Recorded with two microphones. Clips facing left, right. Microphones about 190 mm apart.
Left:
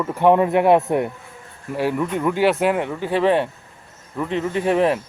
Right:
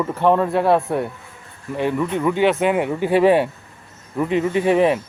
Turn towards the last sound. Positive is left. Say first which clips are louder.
# right 2 dB
turn(degrees=0)  # may be behind; listen again after turning